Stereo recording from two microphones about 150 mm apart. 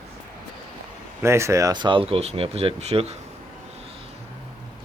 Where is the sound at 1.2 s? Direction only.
20° right (ahead or behind); by 3.1 s 45° right (ahead or behind).